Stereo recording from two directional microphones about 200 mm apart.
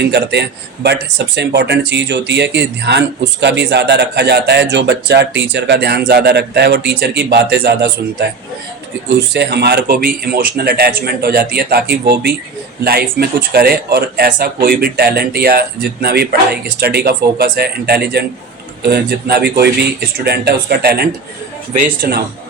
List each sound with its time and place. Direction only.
0.0 s a man's voice: 55° right (ahead or behind)
9.3 s speech: 55° right (ahead or behind)